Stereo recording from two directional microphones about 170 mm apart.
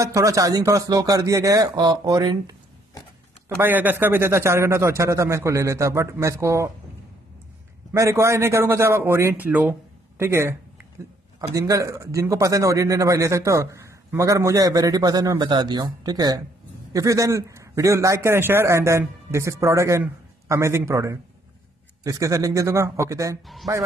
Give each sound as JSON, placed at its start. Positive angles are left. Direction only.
{"t": 0.0, "sound": "a man's voice", "side_deg": -20}
{"t": 3.4, "sound": "a man's voice", "side_deg": -10}
{"t": 7.9, "sound": "a man's voice", "side_deg": -15}
{"t": 11.5, "sound": "a man's voice", "side_deg": -20}
{"t": 23.4, "sound": "speech", "side_deg": 0}